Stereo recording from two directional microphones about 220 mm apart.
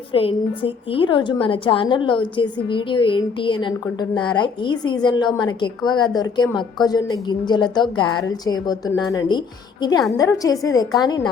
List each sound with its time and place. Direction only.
0.1 s a woman's voice: 25° left (ahead or behind)